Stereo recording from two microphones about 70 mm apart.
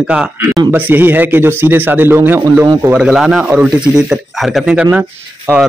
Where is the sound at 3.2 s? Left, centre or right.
Centre.